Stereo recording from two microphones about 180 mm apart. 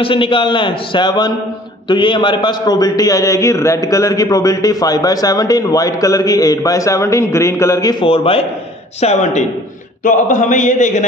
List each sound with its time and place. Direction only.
0.0 s a man's voice: 30° left (ahead or behind)